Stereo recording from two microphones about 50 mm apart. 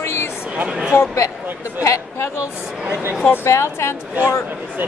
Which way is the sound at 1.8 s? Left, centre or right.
Left.